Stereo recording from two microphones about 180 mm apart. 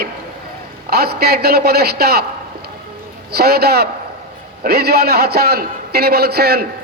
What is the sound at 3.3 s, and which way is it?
A man's voice, 60° right (ahead or behind).